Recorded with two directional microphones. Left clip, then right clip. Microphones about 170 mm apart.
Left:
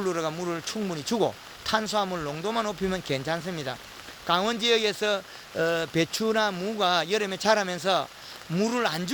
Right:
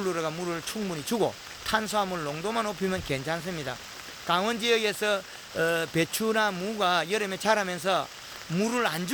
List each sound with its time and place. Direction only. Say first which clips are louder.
0.0 s speech: left 1 dB; 25° left (ahead or behind)